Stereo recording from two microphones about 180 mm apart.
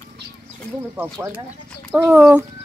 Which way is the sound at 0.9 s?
10° right (ahead or behind).